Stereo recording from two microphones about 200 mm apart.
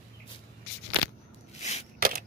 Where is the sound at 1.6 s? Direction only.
35° left (ahead or behind).